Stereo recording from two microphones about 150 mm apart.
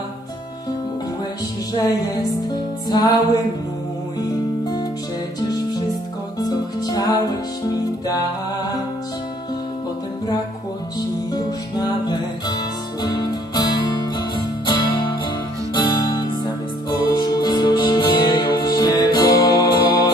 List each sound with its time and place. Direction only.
2.9 s music: 25° left (ahead or behind)
6.4 s music: 25° left (ahead or behind)
11.0 s music: 25° left (ahead or behind)